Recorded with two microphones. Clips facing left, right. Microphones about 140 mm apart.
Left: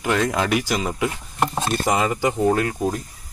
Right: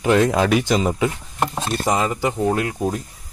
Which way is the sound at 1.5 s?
10° left (ahead or behind).